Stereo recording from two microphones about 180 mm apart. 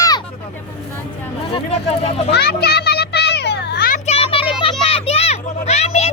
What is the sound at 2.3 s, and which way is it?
Children playing, 65° left (ahead or behind).